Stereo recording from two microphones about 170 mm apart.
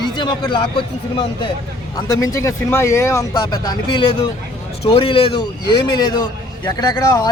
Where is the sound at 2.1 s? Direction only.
20° left (ahead or behind).